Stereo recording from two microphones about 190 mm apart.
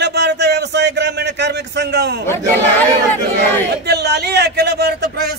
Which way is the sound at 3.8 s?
60° right (ahead or behind).